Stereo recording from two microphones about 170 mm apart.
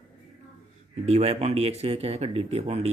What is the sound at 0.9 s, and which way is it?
Speech, 40° right (ahead or behind).